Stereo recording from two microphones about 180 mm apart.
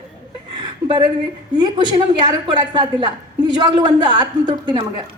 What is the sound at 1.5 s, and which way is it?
A woman's voice, 25° right (ahead or behind).